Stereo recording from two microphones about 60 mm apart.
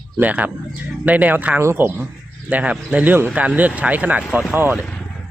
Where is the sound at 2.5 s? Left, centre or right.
Right.